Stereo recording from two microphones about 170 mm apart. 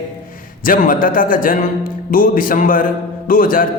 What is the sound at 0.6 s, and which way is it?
A man's voice, 55° left (ahead or behind).